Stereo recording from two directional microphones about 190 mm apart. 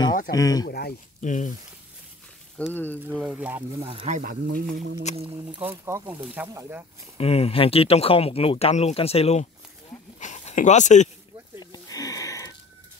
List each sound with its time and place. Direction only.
0.3 s speech: 20° left (ahead or behind)
0.7 s speech: 55° left (ahead or behind)
1.2 s speech: 40° left (ahead or behind)
2.5 s speech: 5° left (ahead or behind)
3.1 s speech: 5° right (ahead or behind)
4.0 s speech: 45° right (ahead or behind)
5.1 s speech: 35° left (ahead or behind)
5.5 s speech: 10° right (ahead or behind)
7.2 s speech: 30° left (ahead or behind)
11.6 s a sound: 20° left (ahead or behind)